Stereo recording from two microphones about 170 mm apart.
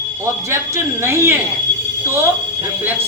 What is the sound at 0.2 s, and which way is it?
Speech, 15° right (ahead or behind).